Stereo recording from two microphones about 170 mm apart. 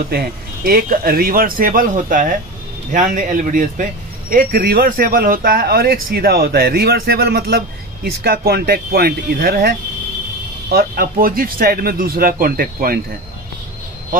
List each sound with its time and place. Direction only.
0.7 s a man's voice: 60° right (ahead or behind)